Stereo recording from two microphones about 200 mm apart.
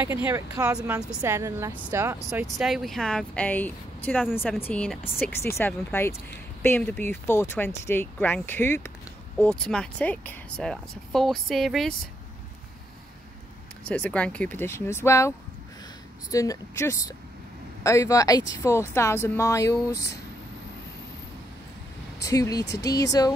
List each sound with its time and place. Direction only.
0.3 s speech: 10° right (ahead or behind)
2.5 s speech: centre (ahead or behind)
13.8 s speech: 5° left (ahead or behind)
19.9 s speech: 55° left (ahead or behind)
22.2 s speech: 15° left (ahead or behind)